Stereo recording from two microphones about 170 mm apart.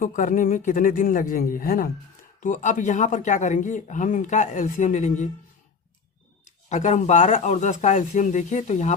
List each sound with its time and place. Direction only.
0.0 s speech: 50° left (ahead or behind)
2.4 s speech: 50° left (ahead or behind)
6.7 s speech: 45° left (ahead or behind)